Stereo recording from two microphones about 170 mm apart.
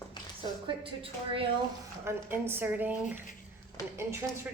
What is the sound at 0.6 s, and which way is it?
Speech, 30° right (ahead or behind).